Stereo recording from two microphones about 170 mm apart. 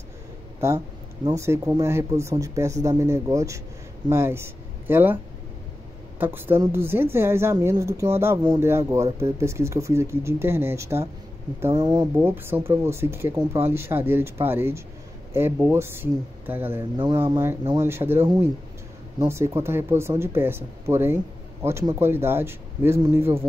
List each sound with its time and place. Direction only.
1.3 s speech: 15° right (ahead or behind)
11.7 s speech: 25° right (ahead or behind)
12.2 s speech: 15° right (ahead or behind)